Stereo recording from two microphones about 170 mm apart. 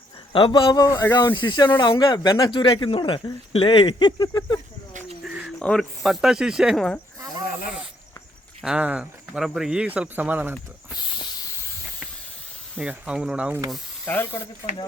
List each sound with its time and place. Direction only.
0.3 s speech: 30° left (ahead or behind)
5.0 s a sound: 5° right (ahead or behind)
5.5 s speech: 5° left (ahead or behind)
8.6 s speech: 5° right (ahead or behind)
10.9 s snake: 25° left (ahead or behind)
12.8 s speech: 5° right (ahead or behind)
14.1 s speech: 15° left (ahead or behind)